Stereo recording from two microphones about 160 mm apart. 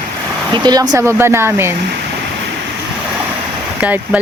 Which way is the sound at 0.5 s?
25° right (ahead or behind).